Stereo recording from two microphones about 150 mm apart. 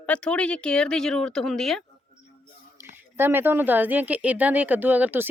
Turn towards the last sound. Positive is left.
turn(degrees=-10)  # may be behind; listen again after turning